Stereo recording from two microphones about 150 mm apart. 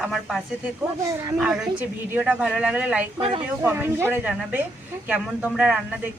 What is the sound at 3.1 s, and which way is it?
Speech, 35° right (ahead or behind).